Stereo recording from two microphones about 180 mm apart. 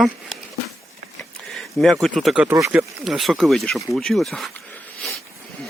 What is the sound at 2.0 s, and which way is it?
Speech, centre (ahead or behind).